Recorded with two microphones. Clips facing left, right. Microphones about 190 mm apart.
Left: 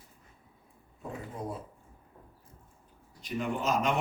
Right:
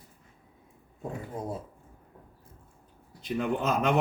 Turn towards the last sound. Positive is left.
turn(degrees=-60)  # may be behind; listen again after turning